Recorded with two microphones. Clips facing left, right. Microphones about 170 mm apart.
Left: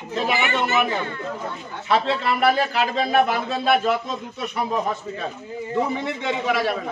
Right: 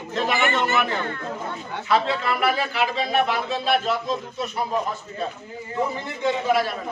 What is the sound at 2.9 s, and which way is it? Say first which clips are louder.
Speech: left 5 dB; 50° left (ahead or behind).